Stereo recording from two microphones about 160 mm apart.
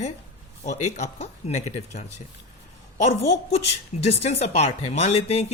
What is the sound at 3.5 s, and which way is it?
Speech, 40° left (ahead or behind).